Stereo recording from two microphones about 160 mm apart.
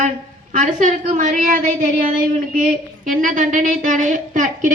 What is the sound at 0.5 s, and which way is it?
A woman's voice, 50° right (ahead or behind).